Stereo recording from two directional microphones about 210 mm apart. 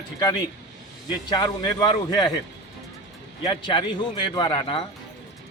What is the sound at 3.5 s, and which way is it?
A man's voice, 20° left (ahead or behind).